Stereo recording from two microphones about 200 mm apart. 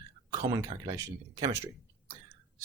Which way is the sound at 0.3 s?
20° right (ahead or behind).